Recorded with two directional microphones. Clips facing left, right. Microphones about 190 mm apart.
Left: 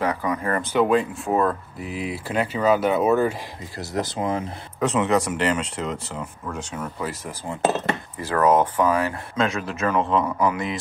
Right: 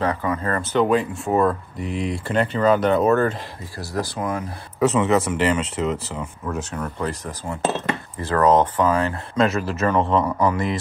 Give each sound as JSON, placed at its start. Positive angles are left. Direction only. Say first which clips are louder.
{"t": 0.0, "sound": "speech", "louder": "right 1 dB", "side_deg": 15}
{"t": 0.8, "sound": "speech", "louder": "right 1 dB", "side_deg": 0}
{"t": 3.7, "sound": "speech", "louder": "even", "side_deg": 20}
{"t": 4.7, "sound": "speech", "louder": "right 3 dB", "side_deg": -5}
{"t": 9.4, "sound": "speech", "louder": "right 4 dB", "side_deg": 0}